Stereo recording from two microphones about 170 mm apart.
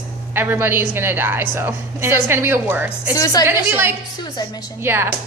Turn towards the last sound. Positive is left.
turn(degrees=-15)  # may be behind; listen again after turning